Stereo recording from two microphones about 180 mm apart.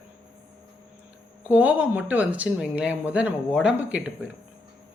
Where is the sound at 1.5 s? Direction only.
10° right (ahead or behind).